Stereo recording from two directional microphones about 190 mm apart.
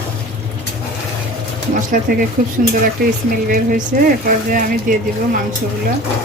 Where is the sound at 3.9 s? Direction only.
50° right (ahead or behind).